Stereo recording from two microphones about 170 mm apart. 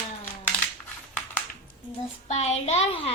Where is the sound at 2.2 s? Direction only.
40° left (ahead or behind).